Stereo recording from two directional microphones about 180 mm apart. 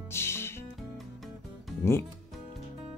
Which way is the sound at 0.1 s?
15° left (ahead or behind).